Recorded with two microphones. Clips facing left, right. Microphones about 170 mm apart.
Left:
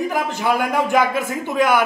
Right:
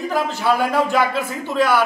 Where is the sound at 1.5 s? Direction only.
15° left (ahead or behind).